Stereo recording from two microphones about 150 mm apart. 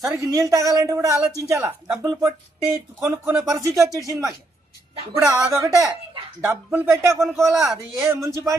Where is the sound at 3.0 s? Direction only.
15° right (ahead or behind).